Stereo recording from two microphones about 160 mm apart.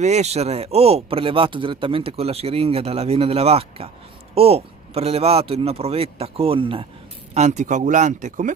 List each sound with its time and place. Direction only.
0.0 s speech: 45° right (ahead or behind)
7.3 s speech: 45° right (ahead or behind)